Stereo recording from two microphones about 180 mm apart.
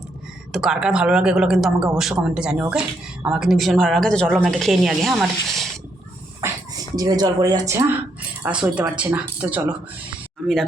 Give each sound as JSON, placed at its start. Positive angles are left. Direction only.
{"t": 0.5, "sound": "speech", "side_deg": -5}
{"t": 6.4, "sound": "a sound", "side_deg": -15}
{"t": 6.9, "sound": "speech", "side_deg": -20}